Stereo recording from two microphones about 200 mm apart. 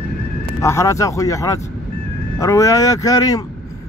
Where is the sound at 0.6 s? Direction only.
15° left (ahead or behind).